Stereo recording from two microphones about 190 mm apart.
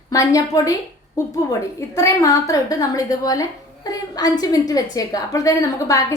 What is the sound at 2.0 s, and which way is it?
A woman's voice, 15° left (ahead or behind).